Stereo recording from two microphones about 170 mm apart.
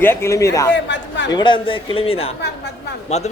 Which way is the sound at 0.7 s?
90° left.